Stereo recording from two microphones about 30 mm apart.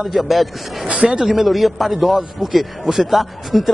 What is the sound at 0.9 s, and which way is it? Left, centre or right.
Speech, right.